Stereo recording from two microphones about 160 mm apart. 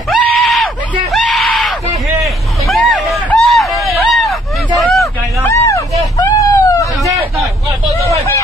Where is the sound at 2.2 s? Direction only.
Centre (ahead or behind).